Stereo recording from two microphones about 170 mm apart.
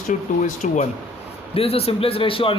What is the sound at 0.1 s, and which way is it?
Speech, 50° left (ahead or behind).